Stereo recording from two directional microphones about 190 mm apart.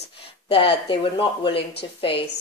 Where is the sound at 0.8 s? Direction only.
25° left (ahead or behind).